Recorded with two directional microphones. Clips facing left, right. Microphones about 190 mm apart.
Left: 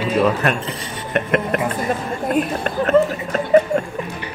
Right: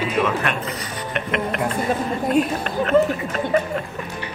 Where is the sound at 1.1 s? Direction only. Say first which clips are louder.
Left 6 dB; 45° left (ahead or behind).